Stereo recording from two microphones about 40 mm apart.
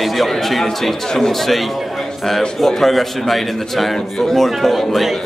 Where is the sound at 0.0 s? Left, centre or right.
Centre.